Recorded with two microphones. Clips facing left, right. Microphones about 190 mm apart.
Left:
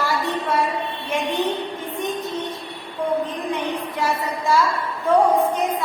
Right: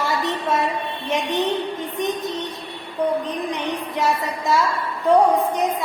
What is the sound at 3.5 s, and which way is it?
A woman's voice, 20° right (ahead or behind).